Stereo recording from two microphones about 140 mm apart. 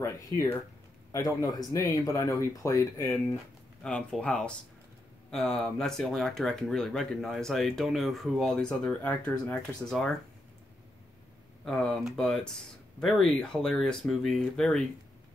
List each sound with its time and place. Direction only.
0.0 s speech: 20° left (ahead or behind)
3.8 s speech: 5° left (ahead or behind)
11.6 s speech: 5° left (ahead or behind)